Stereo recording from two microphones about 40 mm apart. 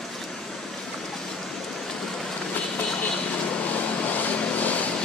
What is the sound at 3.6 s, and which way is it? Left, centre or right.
Vehicle, left.